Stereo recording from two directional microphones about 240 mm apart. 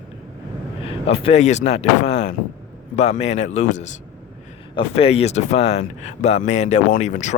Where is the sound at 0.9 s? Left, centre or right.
Left.